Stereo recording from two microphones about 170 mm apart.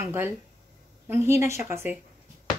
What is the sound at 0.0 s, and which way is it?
A woman's voice, 10° right (ahead or behind).